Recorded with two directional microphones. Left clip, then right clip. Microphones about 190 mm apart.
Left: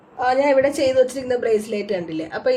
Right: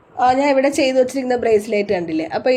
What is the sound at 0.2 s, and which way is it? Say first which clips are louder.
A woman's voice: right 2 dB; 45° right (ahead or behind).